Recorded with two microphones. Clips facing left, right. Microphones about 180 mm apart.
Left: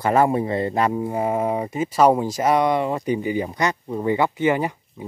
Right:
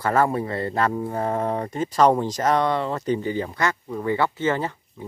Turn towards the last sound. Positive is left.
turn(degrees=15)  # may be behind; listen again after turning